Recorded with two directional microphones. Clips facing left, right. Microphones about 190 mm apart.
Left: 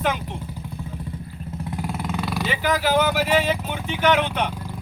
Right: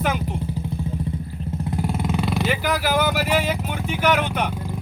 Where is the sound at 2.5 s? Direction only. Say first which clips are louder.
Left 5 dB; 10° right (ahead or behind).